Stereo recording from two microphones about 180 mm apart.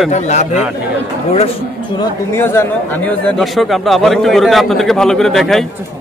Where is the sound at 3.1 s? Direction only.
Centre (ahead or behind).